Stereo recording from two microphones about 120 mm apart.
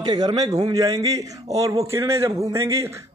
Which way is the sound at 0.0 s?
35° right (ahead or behind).